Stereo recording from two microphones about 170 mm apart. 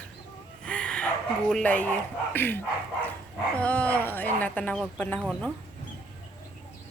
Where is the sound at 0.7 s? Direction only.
5° left (ahead or behind).